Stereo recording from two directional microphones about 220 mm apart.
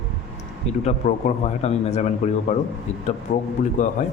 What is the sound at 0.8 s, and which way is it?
A man's voice, 30° left (ahead or behind).